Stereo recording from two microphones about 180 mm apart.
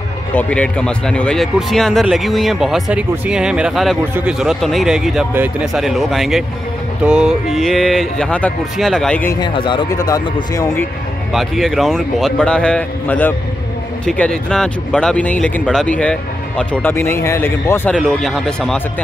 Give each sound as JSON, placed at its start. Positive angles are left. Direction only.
{"t": 0.3, "sound": "speech", "side_deg": 5}
{"t": 9.4, "sound": "speech", "side_deg": 25}
{"t": 11.3, "sound": "speech", "side_deg": 0}
{"t": 17.9, "sound": "speech", "side_deg": 0}